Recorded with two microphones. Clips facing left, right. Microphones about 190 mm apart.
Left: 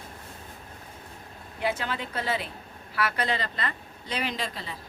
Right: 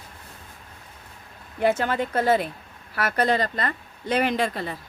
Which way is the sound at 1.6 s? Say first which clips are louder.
Right 8 dB; 50° right (ahead or behind).